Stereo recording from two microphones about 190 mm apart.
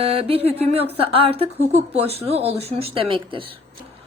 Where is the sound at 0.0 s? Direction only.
30° right (ahead or behind).